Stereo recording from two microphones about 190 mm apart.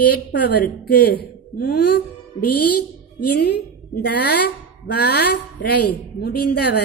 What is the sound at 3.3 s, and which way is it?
A woman's voice, 60° left (ahead or behind).